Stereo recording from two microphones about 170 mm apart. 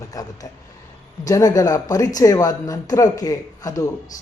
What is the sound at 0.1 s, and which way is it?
Speech, 20° left (ahead or behind).